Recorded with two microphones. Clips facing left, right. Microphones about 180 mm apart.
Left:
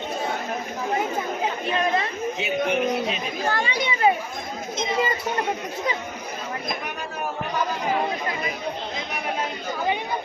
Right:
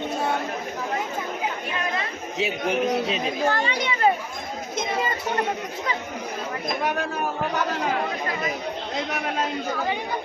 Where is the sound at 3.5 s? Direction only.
10° left (ahead or behind).